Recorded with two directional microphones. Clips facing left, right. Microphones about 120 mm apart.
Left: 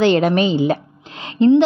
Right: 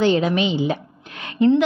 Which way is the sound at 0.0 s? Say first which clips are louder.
Left 3 dB; 70° left (ahead or behind).